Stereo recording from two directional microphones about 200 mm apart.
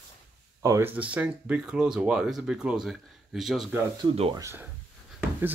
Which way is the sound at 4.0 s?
25° right (ahead or behind).